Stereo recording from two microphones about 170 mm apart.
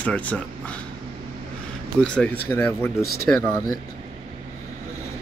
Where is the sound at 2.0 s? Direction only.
5° left (ahead or behind).